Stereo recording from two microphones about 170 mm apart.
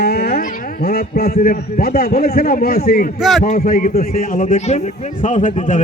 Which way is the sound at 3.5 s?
55° left (ahead or behind).